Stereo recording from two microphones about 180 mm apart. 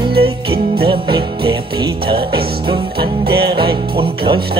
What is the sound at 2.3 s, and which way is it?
Music, 60° right (ahead or behind).